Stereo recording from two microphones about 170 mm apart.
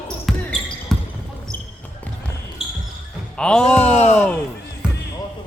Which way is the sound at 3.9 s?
40° left (ahead or behind).